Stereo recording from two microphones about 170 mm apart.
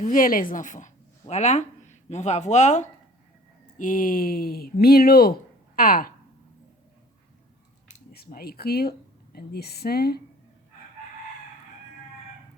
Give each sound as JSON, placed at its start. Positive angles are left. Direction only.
{"t": 0.0, "sound": "a woman's voice", "side_deg": 55}
{"t": 8.1, "sound": "a woman's voice", "side_deg": 65}